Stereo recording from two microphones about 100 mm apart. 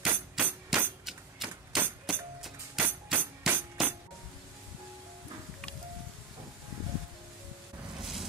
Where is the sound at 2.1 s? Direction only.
Centre (ahead or behind).